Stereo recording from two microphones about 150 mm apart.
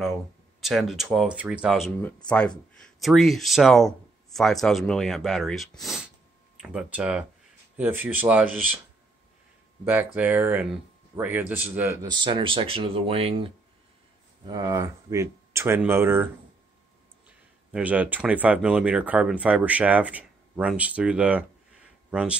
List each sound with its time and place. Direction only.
0.0 s speech: centre (ahead or behind)
2.0 s speech: 10° left (ahead or behind); by 8.6 s 10° right (ahead or behind)
9.8 s speech: 10° right (ahead or behind)
12.1 s speech: 30° right (ahead or behind)
14.4 s speech: 25° right (ahead or behind)
17.6 s speech: 10° right (ahead or behind)